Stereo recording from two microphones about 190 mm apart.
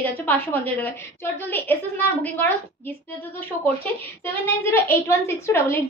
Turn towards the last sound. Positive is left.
turn(degrees=15)  # may be behind; listen again after turning